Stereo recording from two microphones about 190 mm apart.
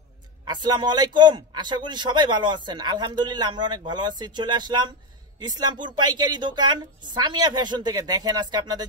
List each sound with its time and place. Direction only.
0.5 s a man's voice: 20° right (ahead or behind)